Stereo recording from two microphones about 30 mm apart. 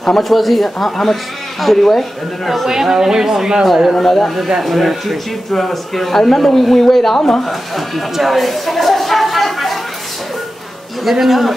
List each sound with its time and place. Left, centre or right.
0.0 s speech: centre
2.7 s speech: centre
3.6 s speech: centre
3.9 s a man's voice: centre
4.6 s a man's voice: centre
7.4 s speech: centre
11.1 s speech: centre